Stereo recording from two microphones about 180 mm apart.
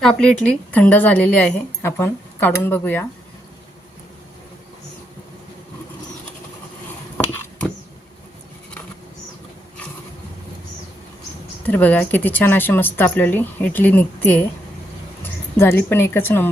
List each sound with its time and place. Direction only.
0.2 s a woman's voice: 5° left (ahead or behind)
11.7 s a woman's voice: 10° left (ahead or behind)